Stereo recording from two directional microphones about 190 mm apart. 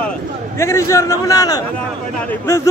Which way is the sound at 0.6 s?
15° left (ahead or behind).